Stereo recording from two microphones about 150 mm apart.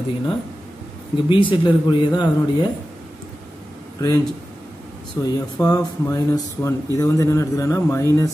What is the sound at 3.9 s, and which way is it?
Speech, 25° left (ahead or behind).